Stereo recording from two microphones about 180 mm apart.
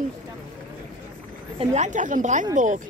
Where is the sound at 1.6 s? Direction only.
40° right (ahead or behind).